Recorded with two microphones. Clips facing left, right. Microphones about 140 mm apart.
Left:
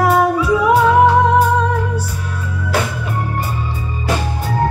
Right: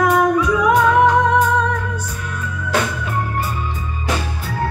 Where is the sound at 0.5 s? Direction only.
30° left (ahead or behind).